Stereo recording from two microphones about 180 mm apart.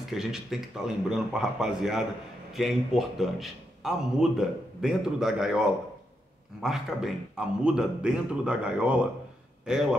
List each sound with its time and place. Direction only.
0.1 s a man's voice: centre (ahead or behind)
6.6 s a man's voice: centre (ahead or behind)